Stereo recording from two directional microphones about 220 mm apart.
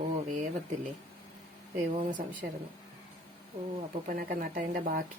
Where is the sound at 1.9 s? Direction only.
35° right (ahead or behind).